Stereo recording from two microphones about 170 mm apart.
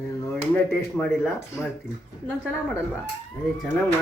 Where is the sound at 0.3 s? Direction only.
10° left (ahead or behind).